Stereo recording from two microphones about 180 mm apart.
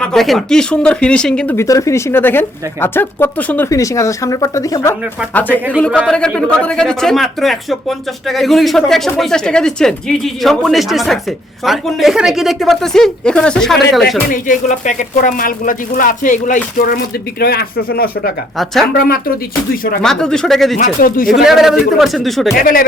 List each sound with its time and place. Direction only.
0.0 s speech: centre (ahead or behind)
14.4 s speech: 45° left (ahead or behind)
20.0 s speech: 5° left (ahead or behind)
20.7 s speech: 50° left (ahead or behind)
21.4 s speech: centre (ahead or behind)
22.5 s speech: 55° left (ahead or behind)